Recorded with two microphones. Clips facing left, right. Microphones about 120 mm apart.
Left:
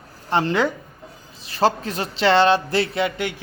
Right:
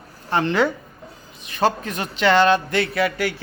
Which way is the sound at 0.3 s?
30° left (ahead or behind).